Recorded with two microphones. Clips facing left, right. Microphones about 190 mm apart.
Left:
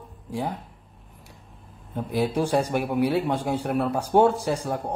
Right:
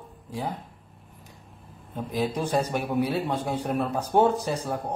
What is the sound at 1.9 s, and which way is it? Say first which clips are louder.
Speech: left 3 dB; 10° left (ahead or behind).